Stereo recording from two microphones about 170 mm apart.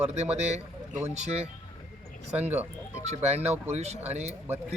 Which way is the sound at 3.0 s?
40° right (ahead or behind).